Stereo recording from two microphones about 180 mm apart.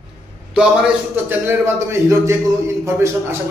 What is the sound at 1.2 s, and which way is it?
A man's voice, 15° right (ahead or behind).